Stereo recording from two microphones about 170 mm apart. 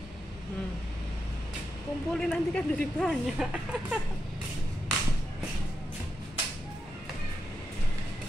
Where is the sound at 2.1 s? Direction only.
5° left (ahead or behind).